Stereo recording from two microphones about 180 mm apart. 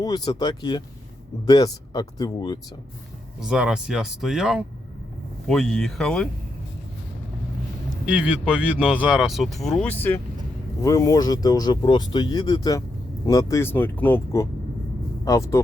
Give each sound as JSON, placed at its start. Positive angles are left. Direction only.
{"t": 0.0, "sound": "speech", "side_deg": 25}
{"t": 3.4, "sound": "speech", "side_deg": -5}
{"t": 8.0, "sound": "speech", "side_deg": -5}